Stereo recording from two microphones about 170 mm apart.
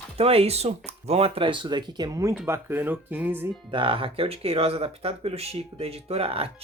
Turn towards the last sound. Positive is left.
turn(degrees=-35)  # may be behind; listen again after turning